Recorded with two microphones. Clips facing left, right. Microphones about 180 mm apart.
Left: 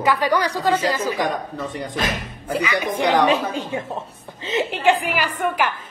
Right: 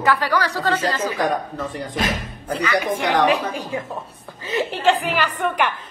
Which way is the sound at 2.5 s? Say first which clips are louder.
Right 1 dB; 15° left (ahead or behind).